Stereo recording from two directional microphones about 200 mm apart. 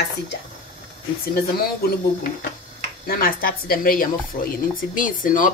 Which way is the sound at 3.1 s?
45° left (ahead or behind).